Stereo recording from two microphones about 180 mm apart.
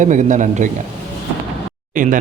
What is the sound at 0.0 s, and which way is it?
Speech, 45° right (ahead or behind).